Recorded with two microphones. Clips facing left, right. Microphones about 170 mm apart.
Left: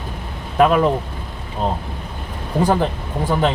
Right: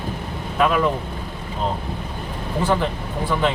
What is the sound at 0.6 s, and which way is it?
Speech, 40° left (ahead or behind).